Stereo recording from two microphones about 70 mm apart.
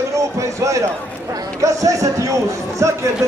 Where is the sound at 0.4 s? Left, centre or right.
Right.